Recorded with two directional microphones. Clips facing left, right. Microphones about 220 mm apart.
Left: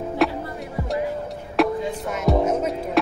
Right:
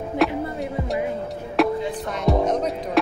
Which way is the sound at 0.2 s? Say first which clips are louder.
Even; centre (ahead or behind).